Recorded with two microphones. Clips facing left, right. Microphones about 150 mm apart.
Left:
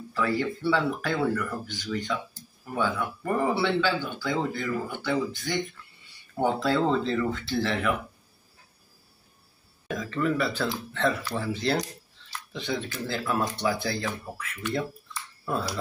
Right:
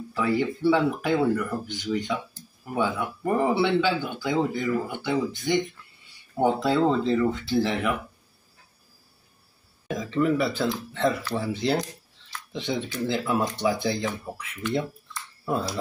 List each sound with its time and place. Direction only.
0.1 s speech: 15° right (ahead or behind)
6.6 s speech: 15° right (ahead or behind)
9.8 s speech: 20° right (ahead or behind)